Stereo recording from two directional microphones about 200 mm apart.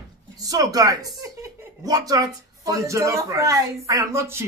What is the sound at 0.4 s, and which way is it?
Speech, 15° right (ahead or behind).